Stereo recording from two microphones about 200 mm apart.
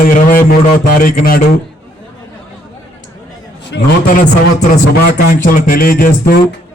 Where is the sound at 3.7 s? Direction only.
45° left (ahead or behind).